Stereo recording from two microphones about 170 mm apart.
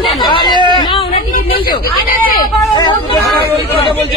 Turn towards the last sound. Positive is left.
turn(degrees=25)  # may be behind; listen again after turning